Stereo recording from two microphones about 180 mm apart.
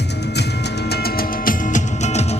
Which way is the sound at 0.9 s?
60° left (ahead or behind).